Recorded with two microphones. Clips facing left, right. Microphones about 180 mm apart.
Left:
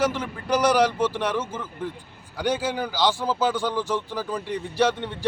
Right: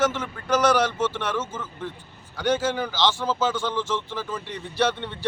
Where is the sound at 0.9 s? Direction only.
35° left (ahead or behind).